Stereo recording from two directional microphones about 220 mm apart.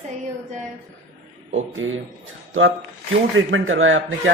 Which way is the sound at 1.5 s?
65° right (ahead or behind).